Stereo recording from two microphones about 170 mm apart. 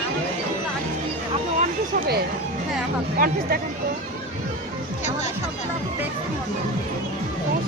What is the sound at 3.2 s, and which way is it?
Speech, 55° right (ahead or behind).